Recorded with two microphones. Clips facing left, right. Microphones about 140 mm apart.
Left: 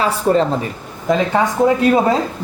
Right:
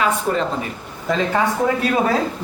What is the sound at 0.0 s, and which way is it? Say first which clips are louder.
Speech: left 5 dB; 35° left (ahead or behind).